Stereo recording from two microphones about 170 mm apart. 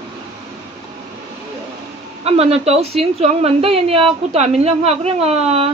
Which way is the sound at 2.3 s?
35° right (ahead or behind).